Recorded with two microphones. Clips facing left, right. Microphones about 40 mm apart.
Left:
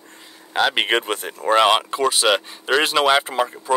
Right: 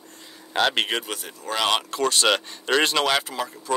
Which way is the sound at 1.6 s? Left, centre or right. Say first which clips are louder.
Left 5 dB; centre.